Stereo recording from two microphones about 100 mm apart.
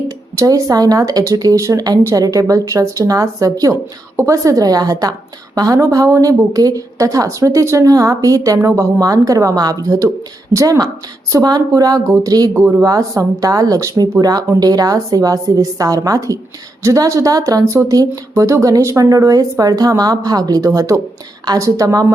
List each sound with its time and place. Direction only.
0.3 s speech: 35° right (ahead or behind)